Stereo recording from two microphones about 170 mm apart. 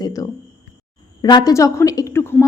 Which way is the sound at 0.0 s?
20° left (ahead or behind).